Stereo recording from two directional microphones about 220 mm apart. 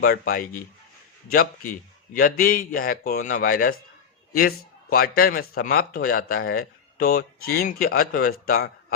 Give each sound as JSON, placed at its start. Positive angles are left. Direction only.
{"t": 0.0, "sound": "a man's voice", "side_deg": 40}